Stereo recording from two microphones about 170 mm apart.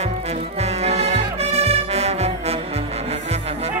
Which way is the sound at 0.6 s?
40° right (ahead or behind).